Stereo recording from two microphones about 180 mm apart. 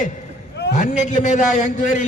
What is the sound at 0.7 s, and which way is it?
A man's voice, 45° left (ahead or behind).